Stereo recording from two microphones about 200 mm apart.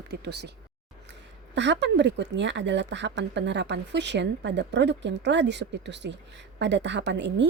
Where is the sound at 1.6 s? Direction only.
60° right (ahead or behind).